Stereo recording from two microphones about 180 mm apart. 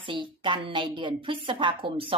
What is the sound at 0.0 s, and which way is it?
A woman's voice, 25° right (ahead or behind).